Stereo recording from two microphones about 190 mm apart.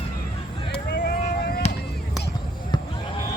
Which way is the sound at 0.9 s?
60° left (ahead or behind).